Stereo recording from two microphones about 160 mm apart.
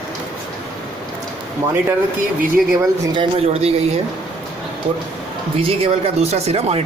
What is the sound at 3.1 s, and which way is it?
Speech, 40° right (ahead or behind).